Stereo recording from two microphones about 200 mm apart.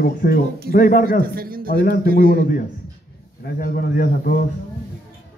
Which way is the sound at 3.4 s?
50° left (ahead or behind).